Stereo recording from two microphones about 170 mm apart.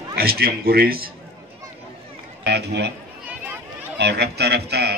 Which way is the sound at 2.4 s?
80° right.